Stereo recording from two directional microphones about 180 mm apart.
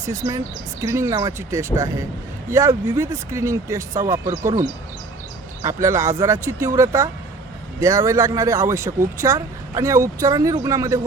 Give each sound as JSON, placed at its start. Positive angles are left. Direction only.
{"t": 0.0, "sound": "speech", "side_deg": -20}